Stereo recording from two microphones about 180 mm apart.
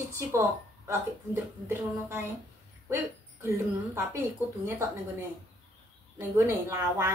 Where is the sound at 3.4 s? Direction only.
15° right (ahead or behind).